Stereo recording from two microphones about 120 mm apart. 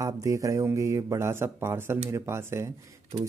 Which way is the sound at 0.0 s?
25° right (ahead or behind).